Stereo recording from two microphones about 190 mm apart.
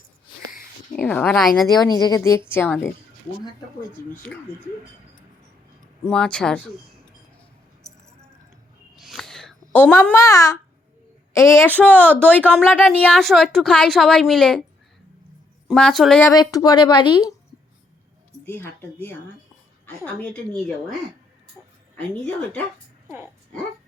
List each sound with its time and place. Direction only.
0.9 s a woman's voice: 5° left (ahead or behind)
2.0 s speech: 20° left (ahead or behind)
4.1 s speech: 10° left (ahead or behind)
6.1 s a woman's voice: 5° left (ahead or behind)
9.0 s a sound: centre (ahead or behind); by 10.6 s 15° left (ahead or behind)
11.3 s a woman's voice: 15° left (ahead or behind)
15.6 s a woman's voice: 5° left (ahead or behind)
16.2 s a woman's voice: 20° left (ahead or behind)
18.4 s speech: 10° left (ahead or behind)
21.9 s a woman's voice: 5° left (ahead or behind)
23.0 s speech: 10° right (ahead or behind)